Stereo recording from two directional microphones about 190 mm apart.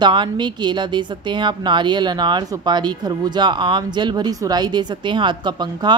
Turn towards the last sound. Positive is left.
turn(degrees=-25)  # may be behind; listen again after turning